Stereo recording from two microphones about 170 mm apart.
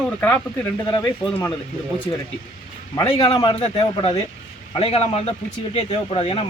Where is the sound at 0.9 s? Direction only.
25° left (ahead or behind).